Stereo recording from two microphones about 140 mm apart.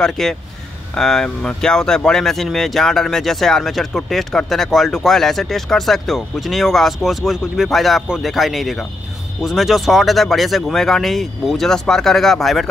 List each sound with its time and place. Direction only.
0.0 s speech: 5° left (ahead or behind)